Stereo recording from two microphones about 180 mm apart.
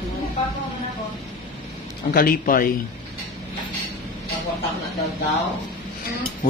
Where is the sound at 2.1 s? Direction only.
55° left (ahead or behind).